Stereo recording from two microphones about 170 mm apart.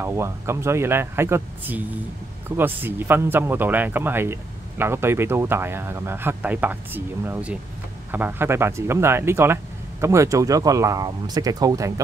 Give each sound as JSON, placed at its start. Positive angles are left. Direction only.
{"t": 0.0, "sound": "speech", "side_deg": -15}